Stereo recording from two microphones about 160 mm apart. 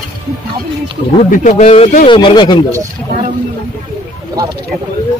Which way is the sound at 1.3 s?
50° left (ahead or behind).